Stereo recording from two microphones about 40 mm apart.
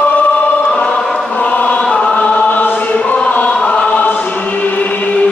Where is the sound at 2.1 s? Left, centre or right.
Left.